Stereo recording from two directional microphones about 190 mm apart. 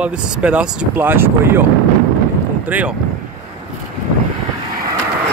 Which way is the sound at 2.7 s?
10° right (ahead or behind).